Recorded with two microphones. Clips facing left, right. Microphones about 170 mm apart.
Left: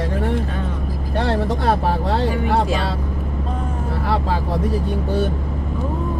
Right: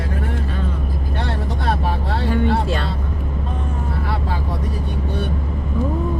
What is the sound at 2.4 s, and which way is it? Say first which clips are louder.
Vehicle: left 1 dB; 10° left (ahead or behind).